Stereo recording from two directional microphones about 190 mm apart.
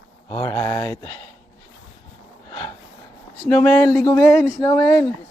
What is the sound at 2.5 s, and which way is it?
Snort, 15° left (ahead or behind).